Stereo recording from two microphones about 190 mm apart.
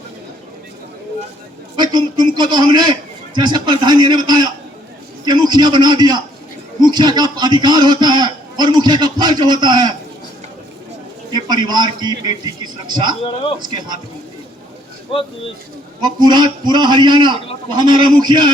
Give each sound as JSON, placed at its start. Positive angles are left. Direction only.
{"t": 1.7, "sound": "a man's voice", "side_deg": -20}
{"t": 11.3, "sound": "a man's voice", "side_deg": -20}
{"t": 16.0, "sound": "a man's voice", "side_deg": -20}